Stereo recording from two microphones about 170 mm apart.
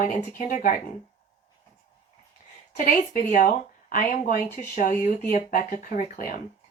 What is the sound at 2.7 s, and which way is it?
A woman's voice, 50° left (ahead or behind).